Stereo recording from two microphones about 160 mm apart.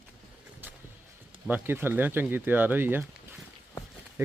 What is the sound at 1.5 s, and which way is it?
Speech, 15° right (ahead or behind).